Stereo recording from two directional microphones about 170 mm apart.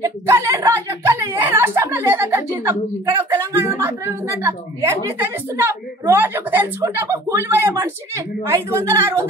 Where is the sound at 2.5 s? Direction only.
15° right (ahead or behind).